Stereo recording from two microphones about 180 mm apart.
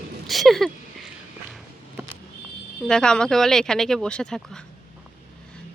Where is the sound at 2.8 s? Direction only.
5° left (ahead or behind).